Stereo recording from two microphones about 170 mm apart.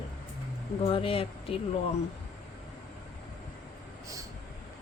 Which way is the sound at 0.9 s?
35° left (ahead or behind).